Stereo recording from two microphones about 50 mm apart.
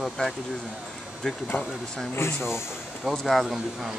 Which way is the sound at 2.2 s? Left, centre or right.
Left.